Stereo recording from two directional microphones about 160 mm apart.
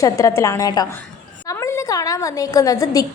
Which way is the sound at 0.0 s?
20° left (ahead or behind).